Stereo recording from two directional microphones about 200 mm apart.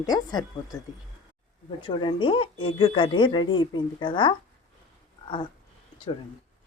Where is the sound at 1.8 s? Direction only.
25° left (ahead or behind).